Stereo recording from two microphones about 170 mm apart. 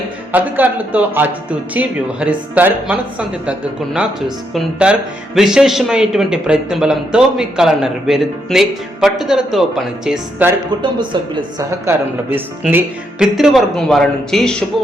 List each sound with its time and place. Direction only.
0.3 s speech: 10° right (ahead or behind)
10.8 s speech: 30° right (ahead or behind)
12.6 s speech: 5° right (ahead or behind)